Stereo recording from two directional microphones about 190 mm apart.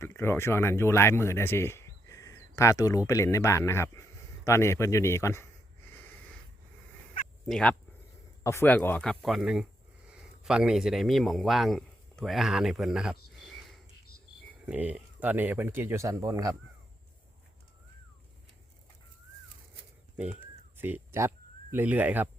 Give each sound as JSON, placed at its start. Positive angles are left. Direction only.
{"t": 0.0, "sound": "speech", "side_deg": 15}
{"t": 7.4, "sound": "a man's voice", "side_deg": 5}
{"t": 20.1, "sound": "a sound", "side_deg": -5}